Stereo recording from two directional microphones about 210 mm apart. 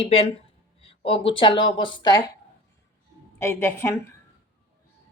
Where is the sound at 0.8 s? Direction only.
25° left (ahead or behind).